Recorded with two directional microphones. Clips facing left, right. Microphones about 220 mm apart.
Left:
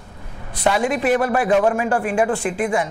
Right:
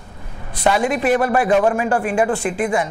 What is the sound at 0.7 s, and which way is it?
A woman's voice, 20° right (ahead or behind).